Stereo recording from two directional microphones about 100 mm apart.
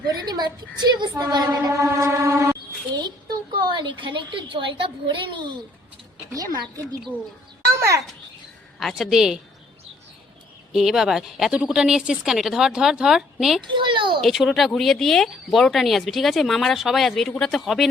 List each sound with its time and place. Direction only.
0.1 s a woman's voice: 45° right (ahead or behind)
1.5 s vehicle: 30° right (ahead or behind)
3.6 s a woman's voice: 50° right (ahead or behind)
6.3 s vehicle: 40° right (ahead or behind)
7.8 s a child's voice: 30° right (ahead or behind)
8.8 s speech: centre (ahead or behind)
10.7 s speech: 5° right (ahead or behind)
13.7 s a sound: 55° right (ahead or behind)
14.2 s speech: centre (ahead or behind)